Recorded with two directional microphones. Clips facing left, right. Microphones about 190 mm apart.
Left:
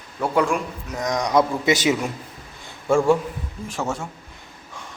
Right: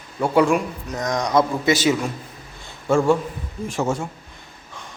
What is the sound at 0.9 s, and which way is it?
Speech, 10° left (ahead or behind).